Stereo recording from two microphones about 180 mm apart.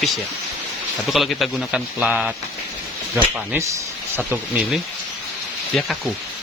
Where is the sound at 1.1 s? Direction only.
Centre (ahead or behind).